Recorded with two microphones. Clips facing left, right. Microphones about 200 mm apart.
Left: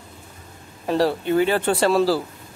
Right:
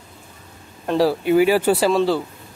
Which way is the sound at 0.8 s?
Centre (ahead or behind).